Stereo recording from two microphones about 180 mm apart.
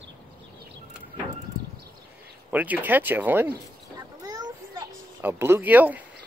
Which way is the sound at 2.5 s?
10° right (ahead or behind).